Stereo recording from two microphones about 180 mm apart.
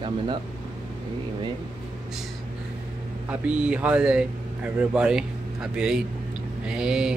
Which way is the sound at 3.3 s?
5° right (ahead or behind).